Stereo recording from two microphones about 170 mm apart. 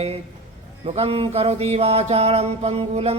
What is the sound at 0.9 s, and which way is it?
A man's voice, 35° right (ahead or behind).